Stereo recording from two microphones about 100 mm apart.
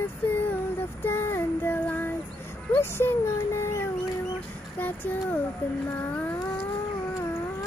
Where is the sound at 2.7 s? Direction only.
25° left (ahead or behind).